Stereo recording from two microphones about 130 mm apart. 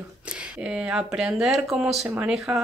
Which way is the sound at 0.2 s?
10° right (ahead or behind).